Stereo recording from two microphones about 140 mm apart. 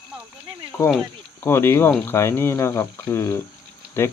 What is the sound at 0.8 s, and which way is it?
Speech, 20° left (ahead or behind).